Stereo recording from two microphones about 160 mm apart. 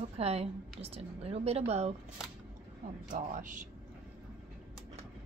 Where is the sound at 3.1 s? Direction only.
55° right (ahead or behind).